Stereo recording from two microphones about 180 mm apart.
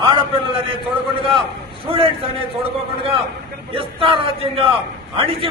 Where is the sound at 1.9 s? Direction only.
30° right (ahead or behind).